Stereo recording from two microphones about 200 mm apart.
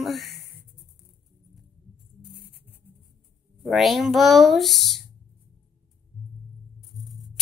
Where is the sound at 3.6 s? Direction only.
Centre (ahead or behind).